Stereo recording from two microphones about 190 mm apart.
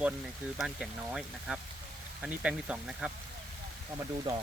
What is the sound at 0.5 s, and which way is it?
Speech, centre (ahead or behind).